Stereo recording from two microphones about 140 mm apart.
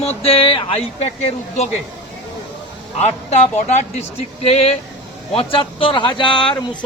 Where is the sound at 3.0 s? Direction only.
50° left (ahead or behind); by 6.5 s 35° left (ahead or behind).